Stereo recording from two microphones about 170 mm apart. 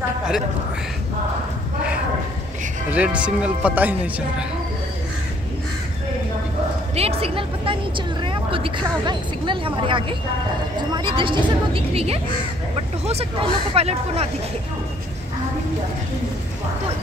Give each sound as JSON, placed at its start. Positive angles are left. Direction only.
{"t": 2.9, "sound": "speech", "side_deg": -5}
{"t": 7.0, "sound": "a woman's voice", "side_deg": -35}